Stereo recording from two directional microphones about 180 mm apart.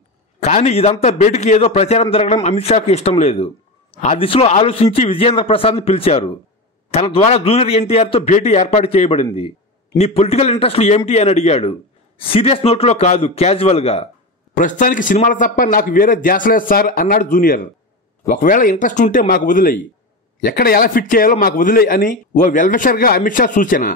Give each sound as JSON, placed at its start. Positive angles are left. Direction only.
{"t": 0.4, "sound": "a man's voice", "side_deg": 35}
{"t": 14.5, "sound": "a man's voice", "side_deg": 45}